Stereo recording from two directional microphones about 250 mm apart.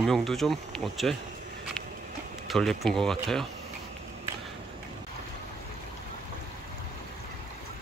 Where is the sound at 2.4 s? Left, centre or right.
Centre.